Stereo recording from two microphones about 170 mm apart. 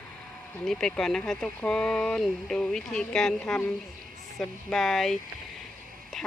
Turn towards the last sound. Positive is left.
turn(degrees=0)  # may be behind; listen again after turning